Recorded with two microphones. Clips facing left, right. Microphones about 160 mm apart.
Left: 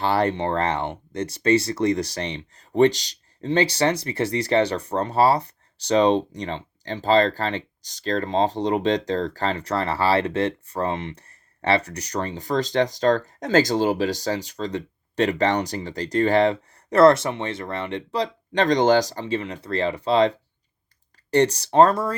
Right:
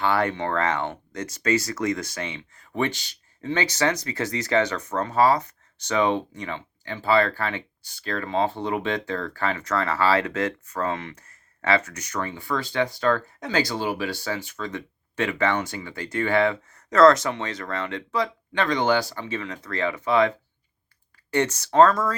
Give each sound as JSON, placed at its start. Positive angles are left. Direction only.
{"t": 0.0, "sound": "speech", "side_deg": 35}
{"t": 19.3, "sound": "speech", "side_deg": 30}